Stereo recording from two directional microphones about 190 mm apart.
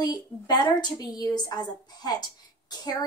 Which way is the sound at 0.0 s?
20° left (ahead or behind).